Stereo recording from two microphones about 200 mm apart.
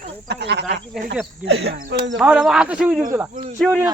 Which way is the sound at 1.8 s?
45° right (ahead or behind).